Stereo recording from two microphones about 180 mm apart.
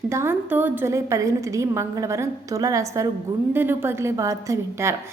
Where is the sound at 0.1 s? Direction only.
15° right (ahead or behind).